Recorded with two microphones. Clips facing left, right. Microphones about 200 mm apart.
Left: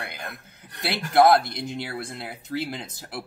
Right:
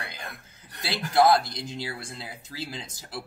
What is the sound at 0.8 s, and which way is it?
Speech, 60° left (ahead or behind).